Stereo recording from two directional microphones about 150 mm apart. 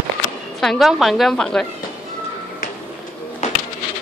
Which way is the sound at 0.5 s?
Centre (ahead or behind).